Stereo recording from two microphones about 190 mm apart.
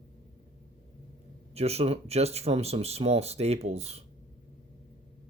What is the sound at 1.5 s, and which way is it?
Speech, 35° right (ahead or behind).